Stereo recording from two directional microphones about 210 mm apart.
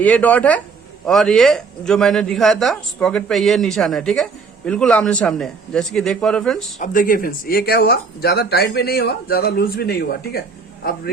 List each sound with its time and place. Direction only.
0.0 s a man's voice: 5° left (ahead or behind)
6.7 s speech: 40° left (ahead or behind)